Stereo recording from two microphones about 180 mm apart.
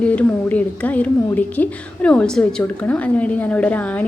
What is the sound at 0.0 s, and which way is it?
A woman's voice, 10° left (ahead or behind).